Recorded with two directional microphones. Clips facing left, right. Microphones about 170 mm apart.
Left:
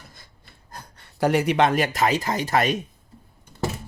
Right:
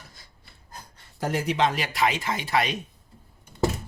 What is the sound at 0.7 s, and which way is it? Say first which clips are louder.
Speech: left 3 dB; 60° left (ahead or behind).